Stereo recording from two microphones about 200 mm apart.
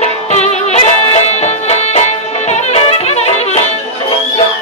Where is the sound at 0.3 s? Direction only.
35° left (ahead or behind).